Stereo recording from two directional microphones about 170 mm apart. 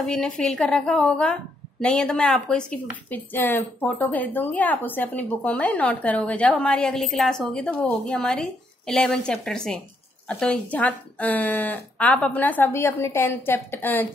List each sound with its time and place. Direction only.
0.0 s a woman's voice: 5° left (ahead or behind)